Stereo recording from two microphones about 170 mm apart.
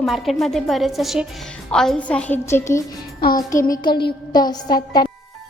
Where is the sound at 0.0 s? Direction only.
Centre (ahead or behind); by 5.0 s 25° left (ahead or behind).